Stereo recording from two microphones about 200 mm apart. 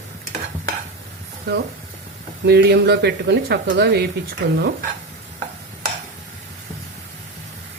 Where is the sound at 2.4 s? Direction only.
55° right (ahead or behind).